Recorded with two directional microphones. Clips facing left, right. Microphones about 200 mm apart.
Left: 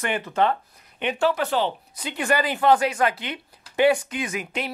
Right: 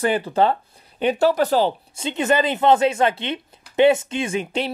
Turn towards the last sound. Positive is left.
turn(degrees=-30)  # may be behind; listen again after turning